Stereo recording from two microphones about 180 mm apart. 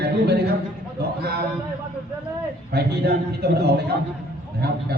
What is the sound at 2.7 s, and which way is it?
A man's voice, 65° right (ahead or behind).